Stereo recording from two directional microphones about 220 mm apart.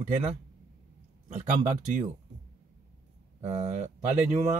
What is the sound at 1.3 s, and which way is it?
Speech, 35° right (ahead or behind).